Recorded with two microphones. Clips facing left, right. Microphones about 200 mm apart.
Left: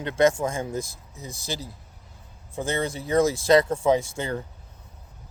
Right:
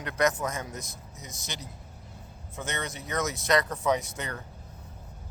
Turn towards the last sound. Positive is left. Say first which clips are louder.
# left 7 dB
turn(degrees=30)  # may be behind; listen again after turning